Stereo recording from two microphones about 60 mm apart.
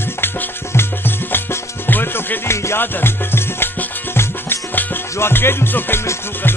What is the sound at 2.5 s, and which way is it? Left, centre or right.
Music, left.